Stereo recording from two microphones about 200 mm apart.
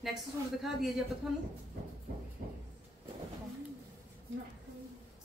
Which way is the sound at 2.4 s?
50° right (ahead or behind).